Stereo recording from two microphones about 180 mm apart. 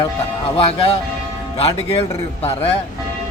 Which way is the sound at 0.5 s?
35° left (ahead or behind).